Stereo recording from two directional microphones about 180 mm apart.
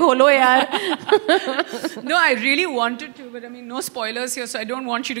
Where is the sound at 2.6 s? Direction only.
30° right (ahead or behind).